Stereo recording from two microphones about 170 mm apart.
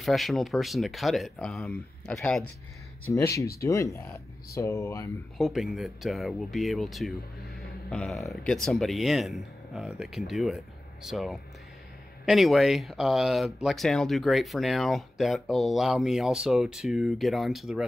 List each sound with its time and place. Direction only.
0.0 s speech: centre (ahead or behind)
3.1 s speech: 20° left (ahead or behind)
5.4 s speech: centre (ahead or behind)